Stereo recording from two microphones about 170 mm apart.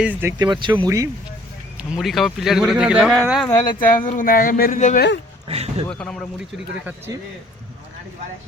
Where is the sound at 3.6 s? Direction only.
50° left (ahead or behind).